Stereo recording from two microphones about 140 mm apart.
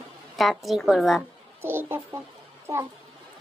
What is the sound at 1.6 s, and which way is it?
Speech, 15° right (ahead or behind).